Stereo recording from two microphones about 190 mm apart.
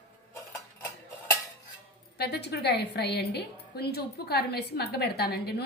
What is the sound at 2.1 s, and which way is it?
A woman's voice, 60° left (ahead or behind).